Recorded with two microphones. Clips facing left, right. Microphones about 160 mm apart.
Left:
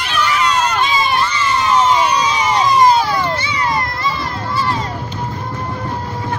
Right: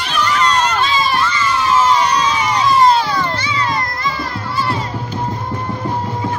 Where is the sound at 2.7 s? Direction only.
20° left (ahead or behind).